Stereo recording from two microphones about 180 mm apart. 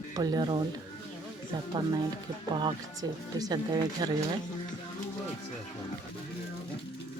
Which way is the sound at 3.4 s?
20° right (ahead or behind).